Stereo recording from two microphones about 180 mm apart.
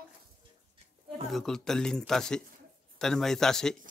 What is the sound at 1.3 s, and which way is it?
Speech, centre (ahead or behind).